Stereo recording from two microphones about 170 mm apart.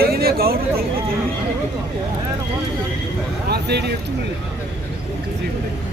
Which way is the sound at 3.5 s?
75° right (ahead or behind).